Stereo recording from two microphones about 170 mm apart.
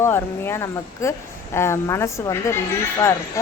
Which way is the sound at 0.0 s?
15° left (ahead or behind).